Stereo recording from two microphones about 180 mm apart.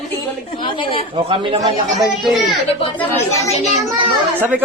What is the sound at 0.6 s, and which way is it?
Speech, 30° left (ahead or behind).